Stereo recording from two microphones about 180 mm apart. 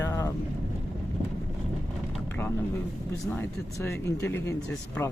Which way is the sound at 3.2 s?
15° left (ahead or behind).